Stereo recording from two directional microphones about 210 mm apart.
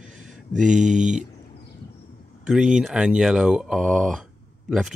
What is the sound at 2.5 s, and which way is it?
Speech, 5° right (ahead or behind).